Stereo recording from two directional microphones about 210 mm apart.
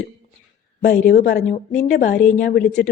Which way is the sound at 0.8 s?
40° left (ahead or behind).